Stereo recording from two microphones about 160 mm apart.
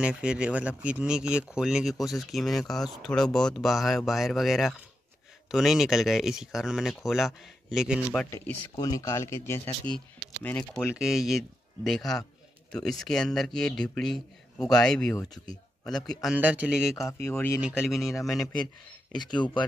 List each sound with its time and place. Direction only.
0.0 s speech: 5° right (ahead or behind)
8.3 s speech: 15° left (ahead or behind)
10.8 s speech: 5° right (ahead or behind)
16.3 s speech: 10° right (ahead or behind)
17.2 s speech: 15° left (ahead or behind)
17.8 s speech: centre (ahead or behind)